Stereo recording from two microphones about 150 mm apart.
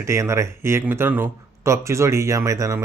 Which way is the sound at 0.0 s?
20° right (ahead or behind).